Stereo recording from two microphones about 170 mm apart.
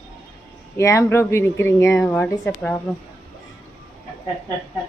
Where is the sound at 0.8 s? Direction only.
15° left (ahead or behind).